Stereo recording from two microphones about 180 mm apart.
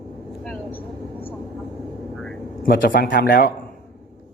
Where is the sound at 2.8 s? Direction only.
50° left (ahead or behind).